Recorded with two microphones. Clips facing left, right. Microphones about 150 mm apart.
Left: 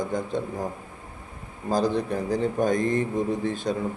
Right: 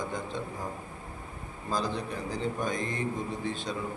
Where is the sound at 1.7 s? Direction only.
50° left (ahead or behind).